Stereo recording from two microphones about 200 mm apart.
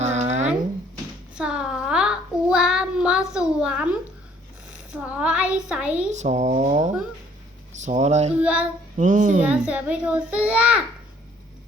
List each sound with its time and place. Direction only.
0.0 s a sound: 35° right (ahead or behind)
1.4 s child singing: 5° right (ahead or behind)
4.7 s speech: 5° right (ahead or behind)
6.1 s speech: 35° right (ahead or behind)
8.4 s speech: 5° right (ahead or behind)
9.0 s speech: 40° right (ahead or behind)
9.4 s speech: 5° right (ahead or behind)